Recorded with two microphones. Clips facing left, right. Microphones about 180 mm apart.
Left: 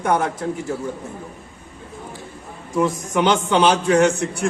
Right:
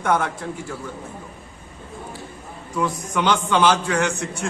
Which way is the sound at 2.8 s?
20° left (ahead or behind).